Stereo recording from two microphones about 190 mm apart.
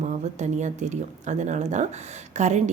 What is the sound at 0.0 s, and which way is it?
A woman's voice, 40° right (ahead or behind).